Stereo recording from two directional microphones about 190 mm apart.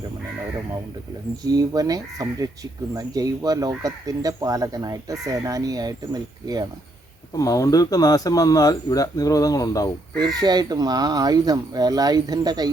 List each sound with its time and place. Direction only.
1.5 s speech: 20° right (ahead or behind)
7.3 s speech: 20° left (ahead or behind)
10.2 s speech: 20° right (ahead or behind)